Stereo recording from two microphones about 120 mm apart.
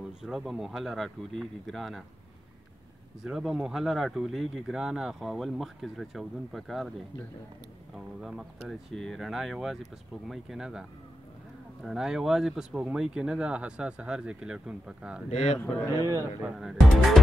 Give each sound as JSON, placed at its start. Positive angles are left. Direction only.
{"t": 0.2, "sound": "speech", "side_deg": -5}
{"t": 3.3, "sound": "speech", "side_deg": -5}
{"t": 7.9, "sound": "speech", "side_deg": 0}
{"t": 15.2, "sound": "a man's voice", "side_deg": 65}
{"t": 15.9, "sound": "a man's voice", "side_deg": -30}
{"t": 16.4, "sound": "speech", "side_deg": 0}